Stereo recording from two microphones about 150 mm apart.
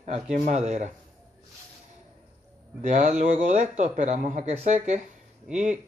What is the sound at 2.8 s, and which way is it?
A man's voice, 55° right (ahead or behind).